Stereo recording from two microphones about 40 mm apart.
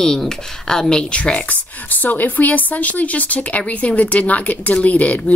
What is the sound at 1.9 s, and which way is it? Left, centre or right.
Speech, left.